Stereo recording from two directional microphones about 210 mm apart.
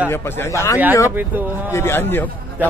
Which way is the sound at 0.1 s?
10° left (ahead or behind).